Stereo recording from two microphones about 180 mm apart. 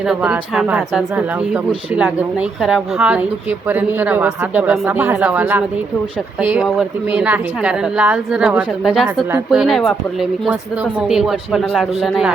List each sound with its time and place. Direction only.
0.0 s speech: 5° right (ahead or behind)